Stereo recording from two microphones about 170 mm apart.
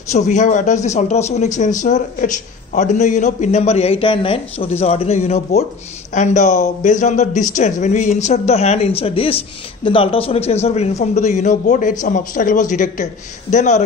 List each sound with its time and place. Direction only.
0.1 s a man's voice: 45° left (ahead or behind)